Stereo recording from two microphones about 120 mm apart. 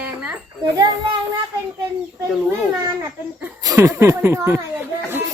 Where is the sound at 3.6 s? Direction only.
25° right (ahead or behind).